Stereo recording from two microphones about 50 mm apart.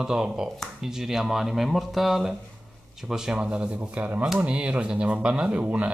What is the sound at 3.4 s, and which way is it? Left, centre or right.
Speech, centre.